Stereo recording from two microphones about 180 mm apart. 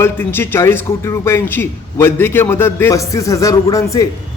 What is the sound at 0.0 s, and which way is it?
Speech, 10° left (ahead or behind).